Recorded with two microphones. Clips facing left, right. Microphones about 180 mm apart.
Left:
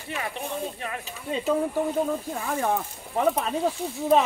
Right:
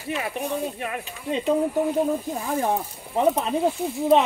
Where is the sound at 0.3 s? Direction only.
10° right (ahead or behind).